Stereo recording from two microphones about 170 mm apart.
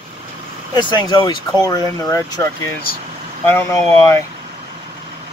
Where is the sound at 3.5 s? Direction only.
10° left (ahead or behind).